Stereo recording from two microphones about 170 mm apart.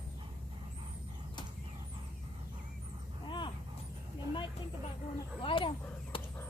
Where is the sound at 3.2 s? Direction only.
30° left (ahead or behind).